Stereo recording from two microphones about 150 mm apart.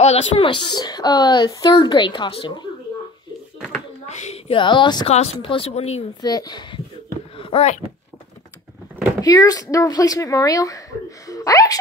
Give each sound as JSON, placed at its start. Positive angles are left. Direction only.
{"t": 0.0, "sound": "a child's voice", "side_deg": 45}
{"t": 4.1, "sound": "a woman's voice", "side_deg": 45}
{"t": 5.1, "sound": "speech", "side_deg": 45}
{"t": 6.2, "sound": "speech", "side_deg": 25}
{"t": 7.3, "sound": "a sound", "side_deg": 40}
{"t": 9.2, "sound": "speech", "side_deg": 25}